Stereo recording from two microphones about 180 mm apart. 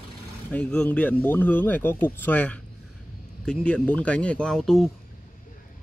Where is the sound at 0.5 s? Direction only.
5° left (ahead or behind).